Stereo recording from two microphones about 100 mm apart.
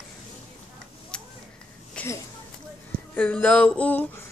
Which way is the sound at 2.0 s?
15° left (ahead or behind).